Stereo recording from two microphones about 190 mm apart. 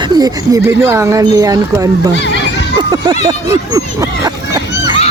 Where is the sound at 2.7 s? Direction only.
25° right (ahead or behind).